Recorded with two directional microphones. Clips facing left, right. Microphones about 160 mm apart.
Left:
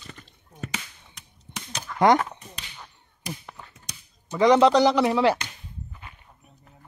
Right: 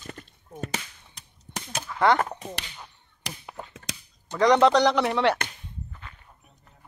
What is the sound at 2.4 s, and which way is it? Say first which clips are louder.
Whip: right 10 dB; 90° right.